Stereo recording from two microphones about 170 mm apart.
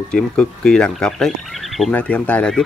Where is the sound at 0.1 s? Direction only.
5° left (ahead or behind).